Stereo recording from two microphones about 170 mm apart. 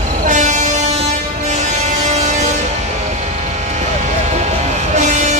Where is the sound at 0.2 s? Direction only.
45° right (ahead or behind).